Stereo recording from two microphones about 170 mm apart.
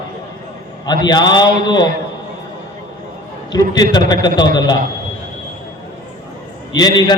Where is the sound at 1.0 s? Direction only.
25° left (ahead or behind).